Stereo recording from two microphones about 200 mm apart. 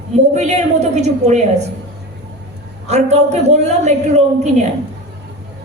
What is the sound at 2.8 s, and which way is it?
Speech, 35° right (ahead or behind).